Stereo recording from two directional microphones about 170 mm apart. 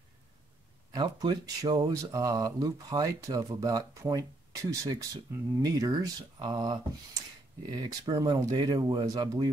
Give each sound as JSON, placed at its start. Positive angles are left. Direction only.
{"t": 0.9, "sound": "speech", "side_deg": -25}